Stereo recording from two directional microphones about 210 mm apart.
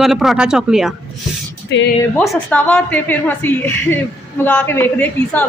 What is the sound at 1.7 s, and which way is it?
Speech, 55° left (ahead or behind).